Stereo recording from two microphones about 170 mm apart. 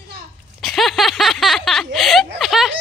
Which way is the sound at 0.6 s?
Centre (ahead or behind).